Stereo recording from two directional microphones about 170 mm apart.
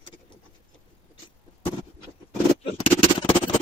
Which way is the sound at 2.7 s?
30° left (ahead or behind).